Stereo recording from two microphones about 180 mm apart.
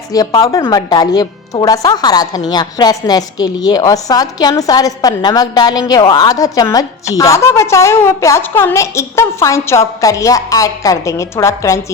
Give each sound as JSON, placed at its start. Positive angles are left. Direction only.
{"t": 0.1, "sound": "a woman's voice", "side_deg": 20}